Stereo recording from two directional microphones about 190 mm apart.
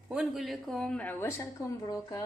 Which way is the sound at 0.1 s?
5° right (ahead or behind).